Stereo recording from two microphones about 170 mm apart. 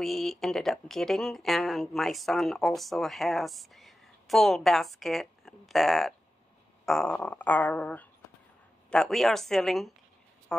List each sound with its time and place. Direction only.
0.0 s speech: centre (ahead or behind)